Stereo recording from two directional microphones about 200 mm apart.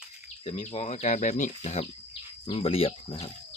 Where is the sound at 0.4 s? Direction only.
30° left (ahead or behind).